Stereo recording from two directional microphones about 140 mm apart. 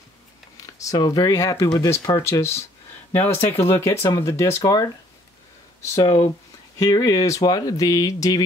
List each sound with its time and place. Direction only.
0.7 s speech: 25° left (ahead or behind)
5.9 s speech: 25° left (ahead or behind)